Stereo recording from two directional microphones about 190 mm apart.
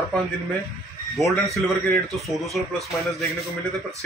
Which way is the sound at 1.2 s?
Centre (ahead or behind).